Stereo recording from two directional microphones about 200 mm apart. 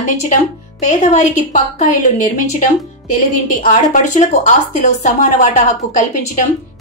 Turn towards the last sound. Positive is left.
turn(degrees=40)  # may be behind; listen again after turning